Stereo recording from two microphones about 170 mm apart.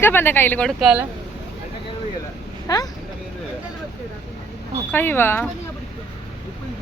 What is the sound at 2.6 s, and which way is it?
Speech, 20° left (ahead or behind).